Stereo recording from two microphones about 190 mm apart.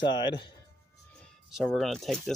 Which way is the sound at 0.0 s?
25° left (ahead or behind).